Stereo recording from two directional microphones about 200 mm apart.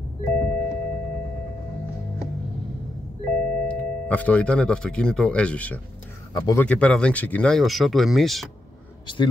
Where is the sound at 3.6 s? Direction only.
5° left (ahead or behind).